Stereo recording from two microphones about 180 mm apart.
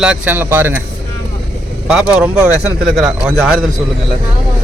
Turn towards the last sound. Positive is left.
turn(degrees=-5)  # may be behind; listen again after turning